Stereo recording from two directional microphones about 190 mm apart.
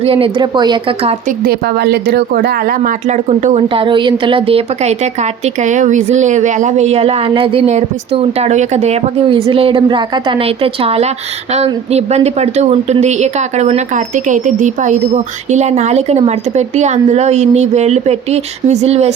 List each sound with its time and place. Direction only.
0.0 s speech: 30° right (ahead or behind)
1.5 s speech: 60° right (ahead or behind); by 19.1 s 35° right (ahead or behind)